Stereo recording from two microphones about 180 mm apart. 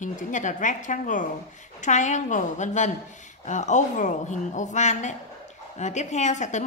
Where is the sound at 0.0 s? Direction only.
45° left (ahead or behind).